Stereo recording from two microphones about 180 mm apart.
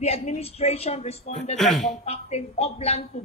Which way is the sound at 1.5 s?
Centre (ahead or behind).